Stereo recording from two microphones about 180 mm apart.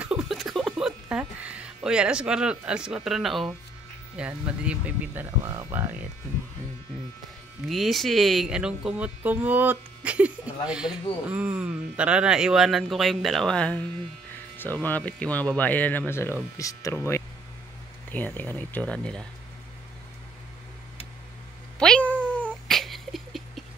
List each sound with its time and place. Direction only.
0.0 s speech: 5° right (ahead or behind)
7.6 s speech: centre (ahead or behind)
21.7 s cat: 5° left (ahead or behind)